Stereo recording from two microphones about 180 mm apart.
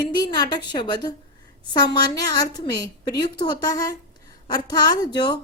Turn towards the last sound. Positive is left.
turn(degrees=25)  # may be behind; listen again after turning